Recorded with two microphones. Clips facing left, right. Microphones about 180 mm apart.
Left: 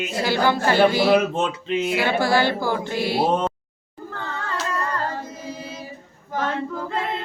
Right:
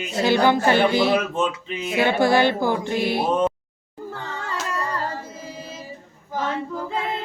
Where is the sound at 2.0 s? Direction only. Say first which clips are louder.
Right 5 dB; 20° right (ahead or behind).